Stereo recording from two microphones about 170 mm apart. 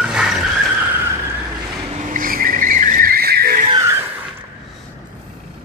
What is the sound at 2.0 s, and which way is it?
Vehicle, 55° right (ahead or behind).